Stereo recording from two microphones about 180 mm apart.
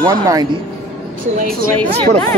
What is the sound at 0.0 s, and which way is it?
Speech, 20° right (ahead or behind).